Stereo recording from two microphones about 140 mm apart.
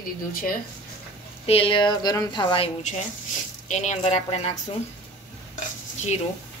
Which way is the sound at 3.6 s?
60° left (ahead or behind).